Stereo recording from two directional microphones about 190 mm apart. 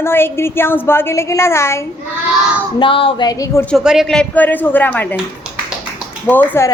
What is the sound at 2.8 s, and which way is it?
Speech, 25° left (ahead or behind).